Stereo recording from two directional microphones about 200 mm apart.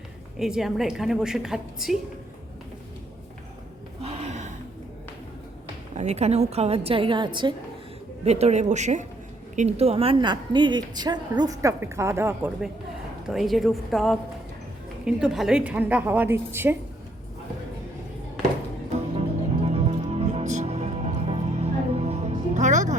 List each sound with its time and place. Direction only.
0.3 s a woman's voice: centre (ahead or behind)
4.0 s gasp: 35° right (ahead or behind)
6.0 s a woman's voice: 35° right (ahead or behind); by 16.7 s 10° right (ahead or behind)
19.6 s music: 30° right (ahead or behind)